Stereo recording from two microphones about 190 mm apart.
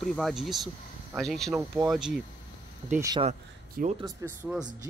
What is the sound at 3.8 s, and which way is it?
Speech, 50° right (ahead or behind).